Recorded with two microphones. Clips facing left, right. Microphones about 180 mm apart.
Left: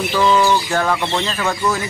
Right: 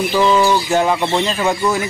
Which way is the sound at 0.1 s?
20° right (ahead or behind).